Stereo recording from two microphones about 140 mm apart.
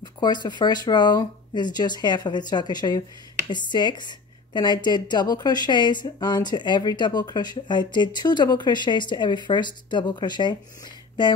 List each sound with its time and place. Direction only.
0.0 s speech: 30° left (ahead or behind)